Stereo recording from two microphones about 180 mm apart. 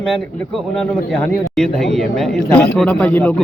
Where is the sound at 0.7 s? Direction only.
Centre (ahead or behind).